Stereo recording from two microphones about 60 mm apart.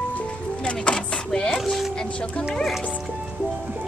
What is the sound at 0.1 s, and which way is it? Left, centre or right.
Music, centre.